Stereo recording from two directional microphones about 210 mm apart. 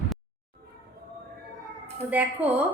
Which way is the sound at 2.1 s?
5° right (ahead or behind).